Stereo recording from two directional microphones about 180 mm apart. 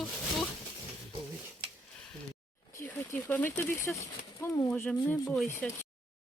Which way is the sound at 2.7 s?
10° left (ahead or behind).